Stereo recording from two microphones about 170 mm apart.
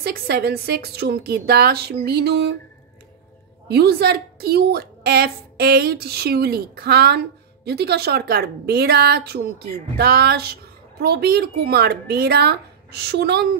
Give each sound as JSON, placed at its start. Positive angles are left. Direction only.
{"t": 0.0, "sound": "a woman's voice", "side_deg": -65}
{"t": 3.6, "sound": "a woman's voice", "side_deg": -70}